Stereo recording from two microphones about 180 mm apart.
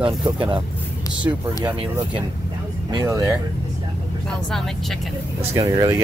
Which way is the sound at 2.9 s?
20° right (ahead or behind).